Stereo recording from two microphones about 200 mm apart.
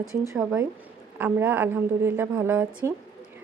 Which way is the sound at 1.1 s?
10° right (ahead or behind).